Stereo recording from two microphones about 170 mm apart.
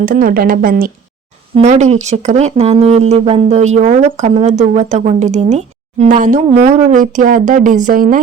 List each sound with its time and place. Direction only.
0.0 s speech: 55° right (ahead or behind)
1.5 s speech: 40° right (ahead or behind)